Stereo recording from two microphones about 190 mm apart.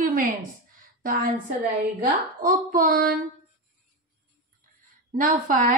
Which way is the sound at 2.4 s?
45° right (ahead or behind).